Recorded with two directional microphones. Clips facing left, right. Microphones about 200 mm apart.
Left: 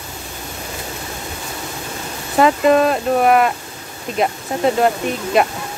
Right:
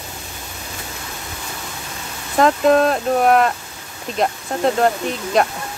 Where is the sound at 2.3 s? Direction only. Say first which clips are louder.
Left 1 dB; 5° left (ahead or behind).